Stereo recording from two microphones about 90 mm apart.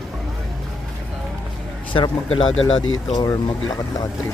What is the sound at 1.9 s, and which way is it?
Speech, 65° left (ahead or behind).